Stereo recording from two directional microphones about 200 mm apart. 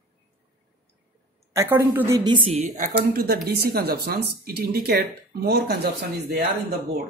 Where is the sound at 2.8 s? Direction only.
50° right (ahead or behind).